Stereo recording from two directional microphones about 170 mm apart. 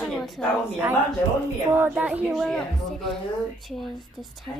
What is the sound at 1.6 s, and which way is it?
A woman's voice, 15° right (ahead or behind).